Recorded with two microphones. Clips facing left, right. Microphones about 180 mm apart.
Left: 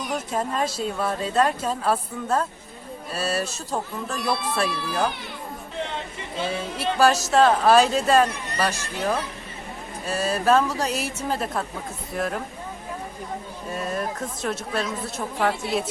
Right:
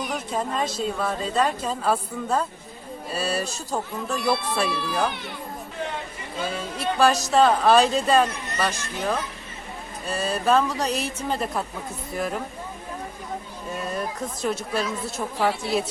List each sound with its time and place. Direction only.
0.1 s speech: centre (ahead or behind)
6.3 s speech: 25° left (ahead or behind)
7.0 s speech: 5° left (ahead or behind)
14.4 s speech: centre (ahead or behind)